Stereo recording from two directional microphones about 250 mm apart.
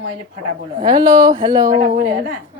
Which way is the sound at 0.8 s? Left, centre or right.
Centre.